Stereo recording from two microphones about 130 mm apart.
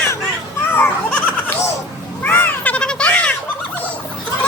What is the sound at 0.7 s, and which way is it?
Goat, 15° left (ahead or behind).